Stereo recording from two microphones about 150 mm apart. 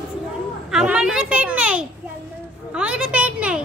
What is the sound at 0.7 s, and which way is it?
A child's voice, 5° right (ahead or behind).